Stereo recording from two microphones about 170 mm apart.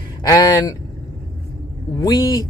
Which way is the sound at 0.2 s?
20° left (ahead or behind).